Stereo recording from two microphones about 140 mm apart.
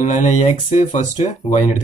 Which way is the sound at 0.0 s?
60° left (ahead or behind).